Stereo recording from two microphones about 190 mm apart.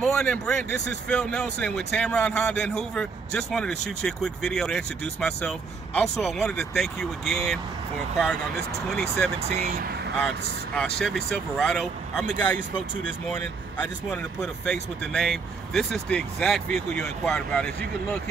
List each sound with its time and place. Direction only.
0.0 s speech: 5° left (ahead or behind)
9.7 s speech: 50° right (ahead or behind)
10.1 s speech: 5° left (ahead or behind)
14.1 s speech: 5° left (ahead or behind)